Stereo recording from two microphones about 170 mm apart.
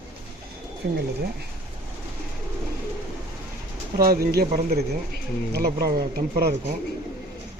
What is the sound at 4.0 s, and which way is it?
Speech, 65° right (ahead or behind).